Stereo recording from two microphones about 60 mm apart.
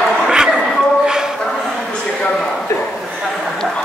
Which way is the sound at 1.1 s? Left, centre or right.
Centre.